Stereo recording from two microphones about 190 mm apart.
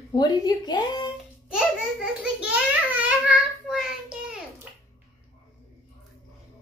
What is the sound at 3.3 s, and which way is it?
Child singing, centre (ahead or behind).